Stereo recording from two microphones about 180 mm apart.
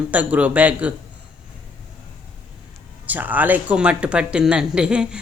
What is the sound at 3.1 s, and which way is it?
Speech, 10° right (ahead or behind).